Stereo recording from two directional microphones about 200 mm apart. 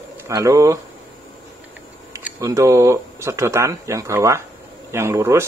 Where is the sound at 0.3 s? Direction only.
15° right (ahead or behind).